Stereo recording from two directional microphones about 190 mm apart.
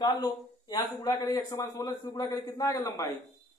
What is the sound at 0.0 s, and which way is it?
A man's voice, 20° left (ahead or behind).